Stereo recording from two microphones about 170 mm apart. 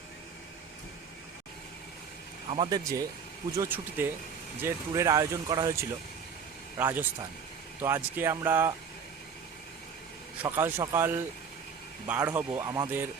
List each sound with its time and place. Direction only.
2.5 s speech: 25° right (ahead or behind)
3.6 s speech: 10° right (ahead or behind)
10.5 s speech: 15° right (ahead or behind)